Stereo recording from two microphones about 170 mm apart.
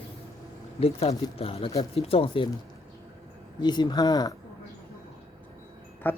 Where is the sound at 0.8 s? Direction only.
35° left (ahead or behind).